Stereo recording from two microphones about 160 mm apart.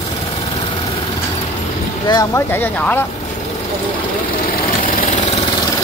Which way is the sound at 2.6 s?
10° left (ahead or behind).